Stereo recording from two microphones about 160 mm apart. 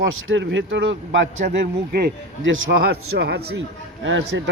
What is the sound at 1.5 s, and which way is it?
Speech, 75° right (ahead or behind).